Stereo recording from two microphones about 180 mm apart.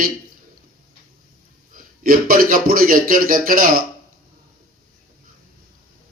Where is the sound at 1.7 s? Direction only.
50° right (ahead or behind).